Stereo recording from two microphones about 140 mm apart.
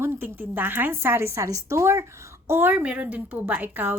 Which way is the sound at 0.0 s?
15° right (ahead or behind).